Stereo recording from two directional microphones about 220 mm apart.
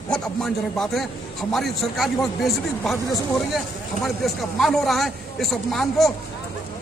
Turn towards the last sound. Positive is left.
turn(degrees=0)  # may be behind; listen again after turning